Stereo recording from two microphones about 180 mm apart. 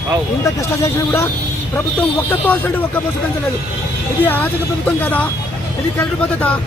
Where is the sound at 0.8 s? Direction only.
15° left (ahead or behind).